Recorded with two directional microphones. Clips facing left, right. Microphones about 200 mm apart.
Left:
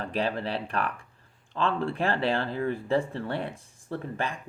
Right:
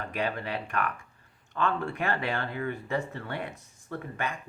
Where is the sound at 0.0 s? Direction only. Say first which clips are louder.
Left 3 dB; 30° left (ahead or behind).